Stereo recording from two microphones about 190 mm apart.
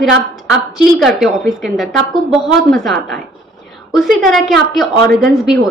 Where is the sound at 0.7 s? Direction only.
Centre (ahead or behind).